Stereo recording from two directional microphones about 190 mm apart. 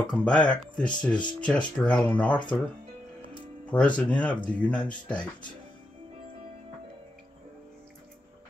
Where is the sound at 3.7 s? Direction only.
5° left (ahead or behind).